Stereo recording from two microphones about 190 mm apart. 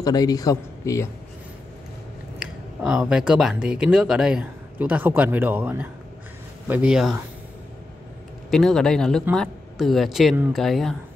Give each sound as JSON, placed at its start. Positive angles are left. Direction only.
{"t": 0.0, "sound": "speech", "side_deg": 20}
{"t": 2.3, "sound": "speech", "side_deg": -5}
{"t": 8.5, "sound": "speech", "side_deg": 0}